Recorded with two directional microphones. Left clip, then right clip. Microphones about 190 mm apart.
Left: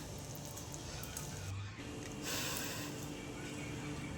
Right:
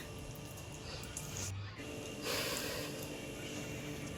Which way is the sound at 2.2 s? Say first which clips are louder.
Right 3 dB; 30° right (ahead or behind).